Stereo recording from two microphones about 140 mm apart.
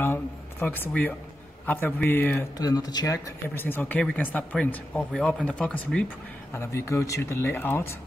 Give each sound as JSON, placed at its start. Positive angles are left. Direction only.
{"t": 0.0, "sound": "speech", "side_deg": 15}
{"t": 2.5, "sound": "speech", "side_deg": 25}
{"t": 6.5, "sound": "speech", "side_deg": 20}